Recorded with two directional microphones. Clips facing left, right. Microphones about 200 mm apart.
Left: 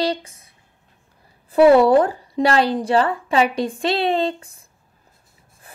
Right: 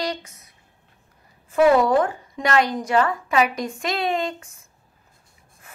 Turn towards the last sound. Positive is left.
turn(degrees=35)  # may be behind; listen again after turning